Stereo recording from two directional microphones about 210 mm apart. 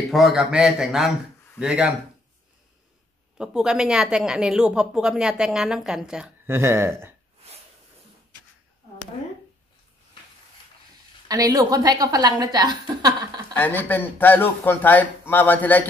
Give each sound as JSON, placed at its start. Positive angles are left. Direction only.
{"t": 0.1, "sound": "a woman's voice", "side_deg": 0}
{"t": 3.3, "sound": "a woman's voice", "side_deg": -5}
{"t": 11.2, "sound": "a woman's voice", "side_deg": -15}
{"t": 13.5, "sound": "a man's voice", "side_deg": 10}